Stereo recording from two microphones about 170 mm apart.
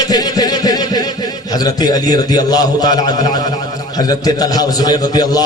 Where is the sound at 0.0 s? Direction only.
20° left (ahead or behind).